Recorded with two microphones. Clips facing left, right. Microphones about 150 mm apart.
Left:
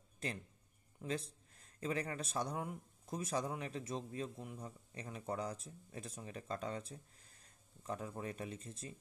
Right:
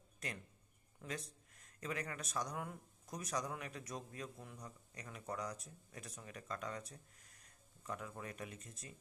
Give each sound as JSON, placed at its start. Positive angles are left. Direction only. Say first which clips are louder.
{"t": 0.2, "sound": "speech", "louder": "left 4 dB", "side_deg": 30}